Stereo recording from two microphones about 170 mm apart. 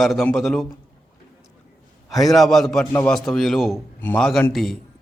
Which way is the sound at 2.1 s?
Centre (ahead or behind).